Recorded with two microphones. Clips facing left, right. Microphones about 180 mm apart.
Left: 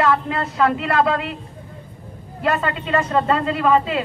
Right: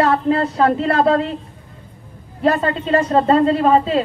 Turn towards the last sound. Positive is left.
turn(degrees=-35)  # may be behind; listen again after turning